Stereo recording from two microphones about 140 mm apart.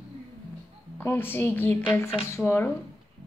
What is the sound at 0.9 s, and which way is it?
Speech, 15° left (ahead or behind).